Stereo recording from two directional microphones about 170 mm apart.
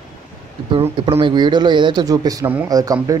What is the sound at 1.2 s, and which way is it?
A man's voice, 25° right (ahead or behind).